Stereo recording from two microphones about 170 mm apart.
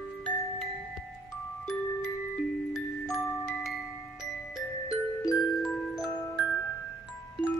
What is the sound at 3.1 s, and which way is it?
Glockenspiel, centre (ahead or behind).